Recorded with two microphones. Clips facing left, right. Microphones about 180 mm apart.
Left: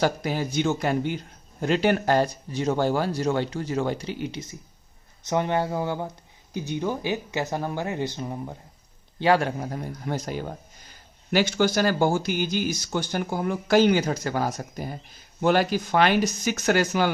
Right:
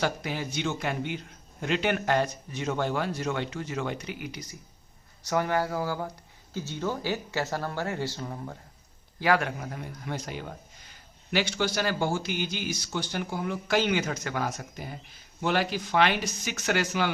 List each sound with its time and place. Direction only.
0.0 s a man's voice: 40° left (ahead or behind); by 8.5 s 20° left (ahead or behind)
9.1 s a man's voice: 30° left (ahead or behind)